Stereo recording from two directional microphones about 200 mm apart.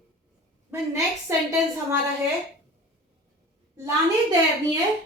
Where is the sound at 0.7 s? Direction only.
10° right (ahead or behind).